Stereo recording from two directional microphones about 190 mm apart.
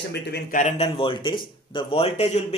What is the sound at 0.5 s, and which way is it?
A man's voice, 35° left (ahead or behind).